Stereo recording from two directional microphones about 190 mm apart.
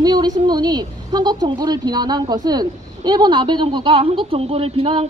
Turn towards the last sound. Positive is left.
turn(degrees=-30)  # may be behind; listen again after turning